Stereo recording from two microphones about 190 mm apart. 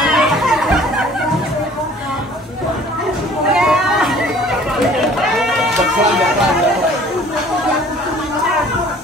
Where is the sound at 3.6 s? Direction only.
Centre (ahead or behind).